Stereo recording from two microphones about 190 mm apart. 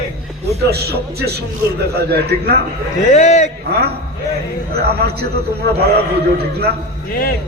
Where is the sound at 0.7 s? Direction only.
55° right (ahead or behind).